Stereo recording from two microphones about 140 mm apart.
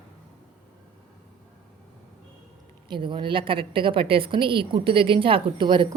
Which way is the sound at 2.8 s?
35° right (ahead or behind).